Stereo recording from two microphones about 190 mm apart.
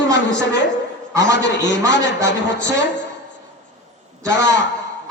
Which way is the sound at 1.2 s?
70° left (ahead or behind).